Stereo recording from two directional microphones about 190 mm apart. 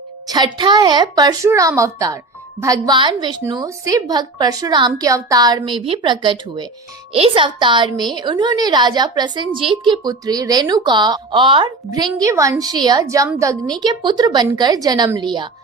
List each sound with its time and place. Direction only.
0.3 s a woman's voice: 25° right (ahead or behind)